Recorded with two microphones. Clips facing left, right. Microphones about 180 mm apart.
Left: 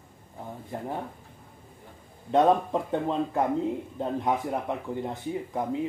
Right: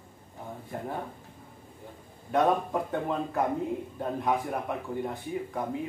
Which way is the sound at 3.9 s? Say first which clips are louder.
Even; 20° left (ahead or behind).